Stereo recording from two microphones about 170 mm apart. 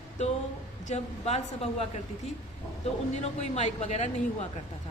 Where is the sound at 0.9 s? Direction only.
40° left (ahead or behind).